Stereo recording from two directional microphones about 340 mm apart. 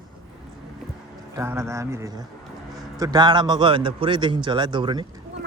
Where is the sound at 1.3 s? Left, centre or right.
Centre.